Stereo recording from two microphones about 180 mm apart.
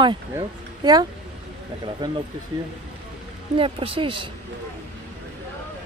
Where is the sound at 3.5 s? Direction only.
30° right (ahead or behind).